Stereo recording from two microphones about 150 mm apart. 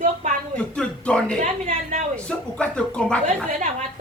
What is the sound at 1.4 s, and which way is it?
Speech, 55° right (ahead or behind).